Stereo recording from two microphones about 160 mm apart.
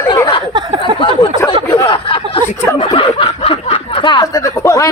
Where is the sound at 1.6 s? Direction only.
15° left (ahead or behind).